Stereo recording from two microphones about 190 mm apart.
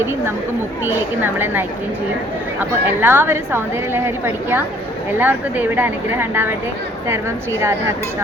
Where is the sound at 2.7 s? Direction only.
10° right (ahead or behind).